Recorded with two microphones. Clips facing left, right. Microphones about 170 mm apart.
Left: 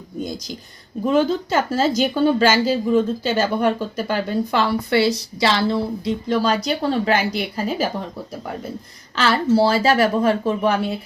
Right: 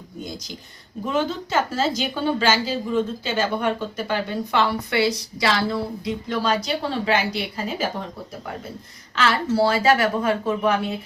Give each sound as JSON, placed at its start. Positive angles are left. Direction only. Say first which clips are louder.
{"t": 1.0, "sound": "a woman's voice", "louder": "left 6 dB", "side_deg": 40}
{"t": 9.1, "sound": "a woman's voice", "louder": "left 4 dB", "side_deg": 30}